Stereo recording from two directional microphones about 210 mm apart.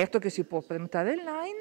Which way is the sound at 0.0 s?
15° right (ahead or behind).